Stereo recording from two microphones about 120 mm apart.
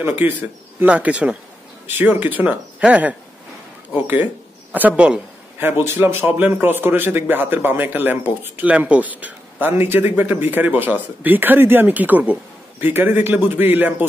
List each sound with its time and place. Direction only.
0.0 s speech: 20° right (ahead or behind)